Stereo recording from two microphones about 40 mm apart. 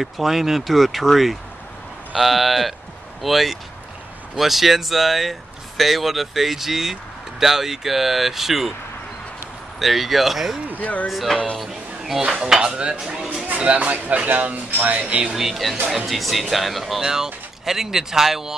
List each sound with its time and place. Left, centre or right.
0.0 s speech: centre
9.8 s speech: centre
10.8 s speech: left
11.1 s speech: centre
11.6 s a sound: centre
12.4 s dishes: centre
13.6 s speech: right
13.8 s speech: right
15.0 s dishes: right
15.3 s speech: centre
17.0 s speech: centre